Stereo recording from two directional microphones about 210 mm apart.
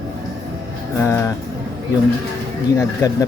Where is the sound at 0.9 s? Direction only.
15° left (ahead or behind).